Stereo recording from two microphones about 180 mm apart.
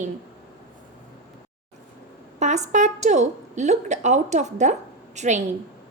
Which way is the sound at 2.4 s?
40° right (ahead or behind).